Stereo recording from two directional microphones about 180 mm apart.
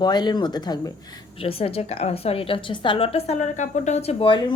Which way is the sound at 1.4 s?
30° left (ahead or behind).